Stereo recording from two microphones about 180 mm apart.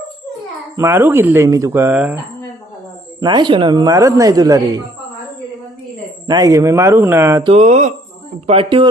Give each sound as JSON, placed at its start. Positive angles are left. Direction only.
{"t": 0.8, "sound": "speech", "side_deg": -15}
{"t": 3.2, "sound": "speech", "side_deg": -25}
{"t": 6.2, "sound": "speech", "side_deg": -20}
{"t": 7.4, "sound": "speech", "side_deg": -40}
{"t": 8.4, "sound": "speech", "side_deg": -30}